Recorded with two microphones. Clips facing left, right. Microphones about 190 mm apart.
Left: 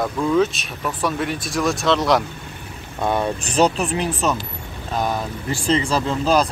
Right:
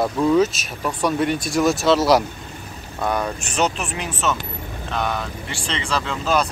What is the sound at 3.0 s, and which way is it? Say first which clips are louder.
Speech: left 2 dB; 25° left (ahead or behind).